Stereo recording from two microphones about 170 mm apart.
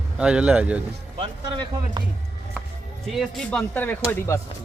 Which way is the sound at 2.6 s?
10° right (ahead or behind).